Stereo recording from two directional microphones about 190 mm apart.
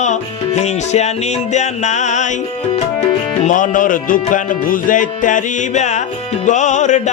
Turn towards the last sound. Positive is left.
turn(degrees=40)  # may be behind; listen again after turning